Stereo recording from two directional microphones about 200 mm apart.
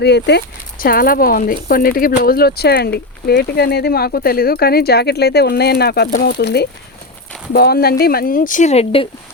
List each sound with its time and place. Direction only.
0.0 s speech: 55° left (ahead or behind); by 9.0 s 30° left (ahead or behind)